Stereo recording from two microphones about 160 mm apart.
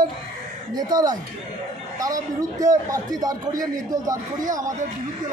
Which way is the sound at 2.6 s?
20° right (ahead or behind).